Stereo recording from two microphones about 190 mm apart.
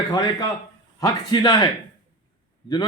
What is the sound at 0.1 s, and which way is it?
A man's voice, 20° left (ahead or behind).